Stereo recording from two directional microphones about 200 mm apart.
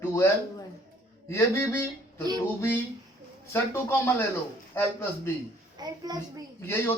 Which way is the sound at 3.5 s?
10° left (ahead or behind).